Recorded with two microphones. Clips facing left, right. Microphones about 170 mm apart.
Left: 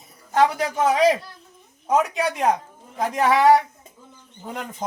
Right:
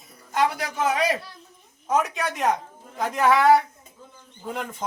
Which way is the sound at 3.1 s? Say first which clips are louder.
Even; 15° left (ahead or behind).